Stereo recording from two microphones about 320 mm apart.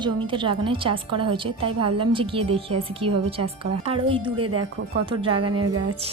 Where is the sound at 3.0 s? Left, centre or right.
Right.